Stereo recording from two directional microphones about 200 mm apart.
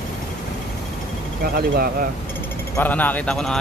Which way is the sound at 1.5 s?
50° right (ahead or behind).